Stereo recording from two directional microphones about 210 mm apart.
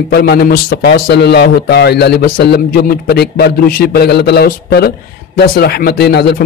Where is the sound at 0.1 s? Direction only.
50° left (ahead or behind).